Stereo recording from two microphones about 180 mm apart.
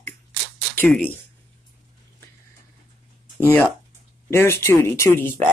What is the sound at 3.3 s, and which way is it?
Speech, 10° left (ahead or behind).